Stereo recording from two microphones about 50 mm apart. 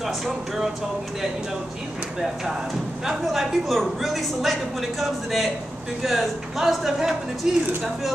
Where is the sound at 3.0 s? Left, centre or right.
Centre.